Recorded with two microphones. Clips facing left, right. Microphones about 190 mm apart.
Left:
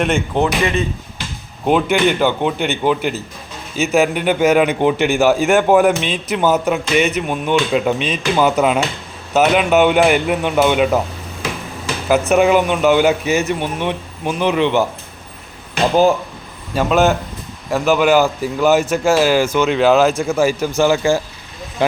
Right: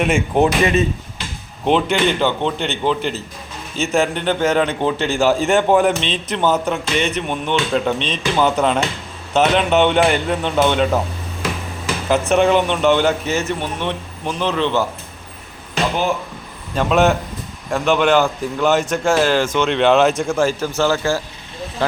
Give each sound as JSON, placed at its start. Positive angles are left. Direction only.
{"t": 0.0, "sound": "speech", "side_deg": -5}
{"t": 0.4, "sound": "speech", "side_deg": -25}
{"t": 1.6, "sound": "a man's voice", "side_deg": 10}
{"t": 12.0, "sound": "a man's voice", "side_deg": 5}
{"t": 16.7, "sound": "a man's voice", "side_deg": 0}